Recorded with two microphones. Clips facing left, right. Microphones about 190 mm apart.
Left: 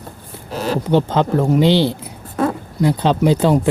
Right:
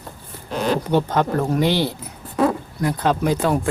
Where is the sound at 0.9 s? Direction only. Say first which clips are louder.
Left 3 dB; 20° left (ahead or behind).